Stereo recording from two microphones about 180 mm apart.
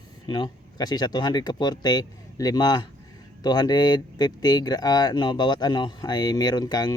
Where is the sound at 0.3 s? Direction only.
25° left (ahead or behind).